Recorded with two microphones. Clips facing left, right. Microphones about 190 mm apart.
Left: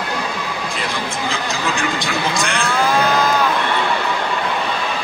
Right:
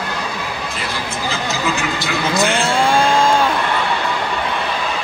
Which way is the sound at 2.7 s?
30° right (ahead or behind).